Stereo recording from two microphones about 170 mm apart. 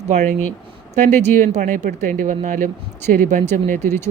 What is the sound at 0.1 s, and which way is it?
A man's voice, 45° right (ahead or behind).